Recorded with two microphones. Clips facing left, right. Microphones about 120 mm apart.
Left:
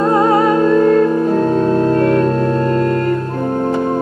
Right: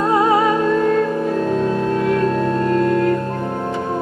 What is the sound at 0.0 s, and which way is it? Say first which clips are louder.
Music: left 3 dB; centre (ahead or behind).